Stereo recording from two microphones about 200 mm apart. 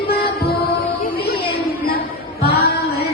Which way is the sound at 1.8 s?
50° left (ahead or behind).